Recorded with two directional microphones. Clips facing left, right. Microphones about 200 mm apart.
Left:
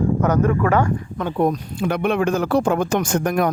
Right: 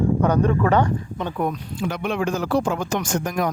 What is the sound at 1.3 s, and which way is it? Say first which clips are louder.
Speech: left 6 dB; 35° left (ahead or behind).